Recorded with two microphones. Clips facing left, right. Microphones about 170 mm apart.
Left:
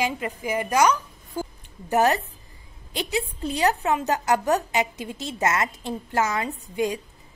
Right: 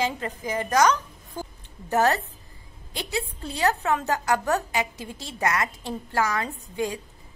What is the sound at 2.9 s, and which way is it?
A woman's voice, 20° left (ahead or behind).